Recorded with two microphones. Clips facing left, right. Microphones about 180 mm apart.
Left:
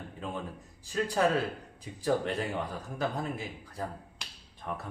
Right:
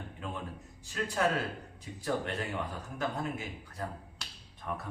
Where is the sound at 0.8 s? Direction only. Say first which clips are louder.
Left 5 dB; 35° left (ahead or behind).